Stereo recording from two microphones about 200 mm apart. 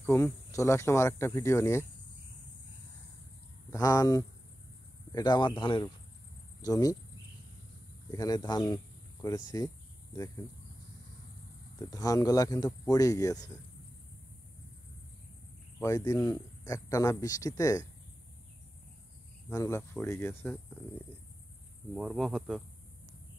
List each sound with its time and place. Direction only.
0.0 s speech: 10° left (ahead or behind)
3.7 s speech: 15° left (ahead or behind)
8.1 s speech: 20° left (ahead or behind)
11.8 s speech: 15° left (ahead or behind)
15.8 s speech: 15° left (ahead or behind)
19.5 s speech: 15° left (ahead or behind)
21.9 s speech: centre (ahead or behind)